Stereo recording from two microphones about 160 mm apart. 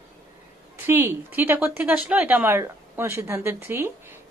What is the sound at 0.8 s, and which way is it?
Speech, 15° right (ahead or behind).